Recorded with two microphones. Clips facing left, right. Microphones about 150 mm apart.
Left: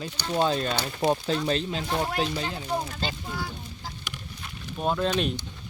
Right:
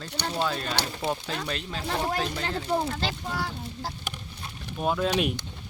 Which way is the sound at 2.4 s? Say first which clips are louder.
Right 2 dB; 65° right (ahead or behind).